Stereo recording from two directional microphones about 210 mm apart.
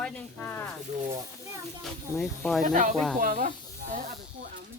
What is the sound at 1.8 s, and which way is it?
Speech, centre (ahead or behind).